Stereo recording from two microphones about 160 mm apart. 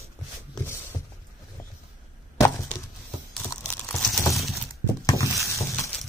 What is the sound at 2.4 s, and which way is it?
Wood, 15° left (ahead or behind).